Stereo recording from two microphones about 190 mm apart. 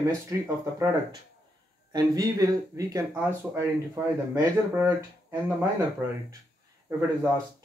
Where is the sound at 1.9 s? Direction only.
20° right (ahead or behind).